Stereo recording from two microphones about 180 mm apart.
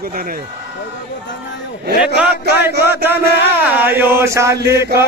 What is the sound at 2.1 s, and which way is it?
A man's voice, 65° right (ahead or behind).